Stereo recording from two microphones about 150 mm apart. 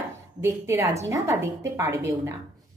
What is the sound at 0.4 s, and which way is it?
A woman's voice, 20° right (ahead or behind).